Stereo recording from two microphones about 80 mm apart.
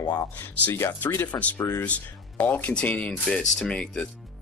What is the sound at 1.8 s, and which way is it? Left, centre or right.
Speech, centre.